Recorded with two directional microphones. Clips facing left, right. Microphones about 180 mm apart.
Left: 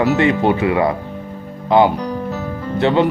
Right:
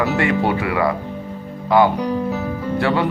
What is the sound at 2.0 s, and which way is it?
Music, 10° right (ahead or behind).